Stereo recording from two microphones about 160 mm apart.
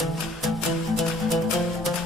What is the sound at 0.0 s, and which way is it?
Music, centre (ahead or behind).